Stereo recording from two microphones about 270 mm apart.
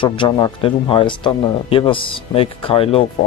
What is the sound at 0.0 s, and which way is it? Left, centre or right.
Speech, centre.